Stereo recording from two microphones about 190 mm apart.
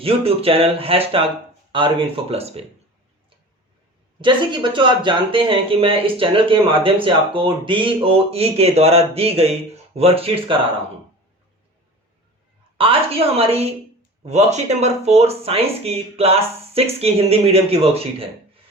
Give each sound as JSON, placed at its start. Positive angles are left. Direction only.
{"t": 0.0, "sound": "speech", "side_deg": -30}
{"t": 4.2, "sound": "speech", "side_deg": -25}
{"t": 12.7, "sound": "speech", "side_deg": -30}